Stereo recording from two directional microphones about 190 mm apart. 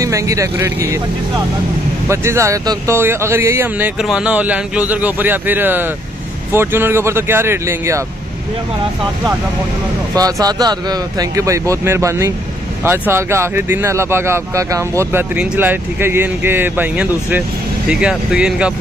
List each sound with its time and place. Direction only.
0.0 s speech: 15° right (ahead or behind)
10.1 s speech: 20° right (ahead or behind)